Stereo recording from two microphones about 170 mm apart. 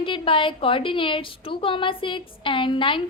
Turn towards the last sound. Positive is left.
turn(degrees=30)  # may be behind; listen again after turning